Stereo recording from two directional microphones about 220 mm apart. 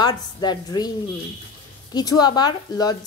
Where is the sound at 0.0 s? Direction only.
20° left (ahead or behind).